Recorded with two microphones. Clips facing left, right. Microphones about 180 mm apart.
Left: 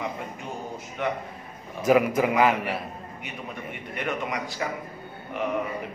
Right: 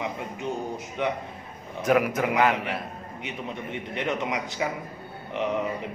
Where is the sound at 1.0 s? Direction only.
20° right (ahead or behind).